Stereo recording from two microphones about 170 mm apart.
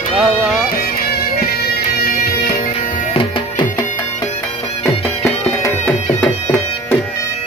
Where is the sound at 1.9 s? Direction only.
60° left (ahead or behind).